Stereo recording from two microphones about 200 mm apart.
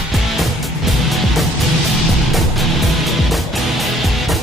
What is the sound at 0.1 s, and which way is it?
Music, centre (ahead or behind).